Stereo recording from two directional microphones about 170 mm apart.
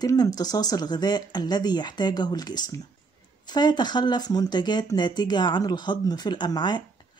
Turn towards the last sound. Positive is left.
turn(degrees=25)  # may be behind; listen again after turning